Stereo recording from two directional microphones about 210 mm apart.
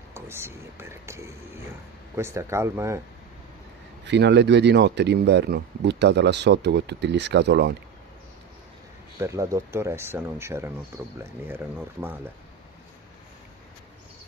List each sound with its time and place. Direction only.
0.1 s speech: 10° right (ahead or behind)
4.0 s speech: 55° right (ahead or behind)
9.2 s speech: 15° right (ahead or behind)